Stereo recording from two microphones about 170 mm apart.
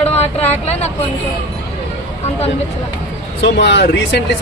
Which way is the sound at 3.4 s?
90° left.